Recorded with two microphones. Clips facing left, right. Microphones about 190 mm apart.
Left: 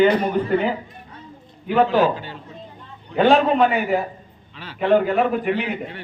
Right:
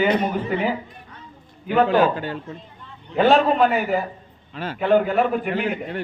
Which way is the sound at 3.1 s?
Centre (ahead or behind).